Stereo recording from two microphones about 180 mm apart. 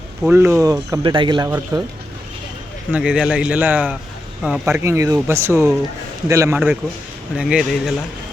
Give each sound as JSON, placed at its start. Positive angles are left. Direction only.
{"t": 0.2, "sound": "speech", "side_deg": -10}
{"t": 2.9, "sound": "speech", "side_deg": -5}
{"t": 7.3, "sound": "speech", "side_deg": -5}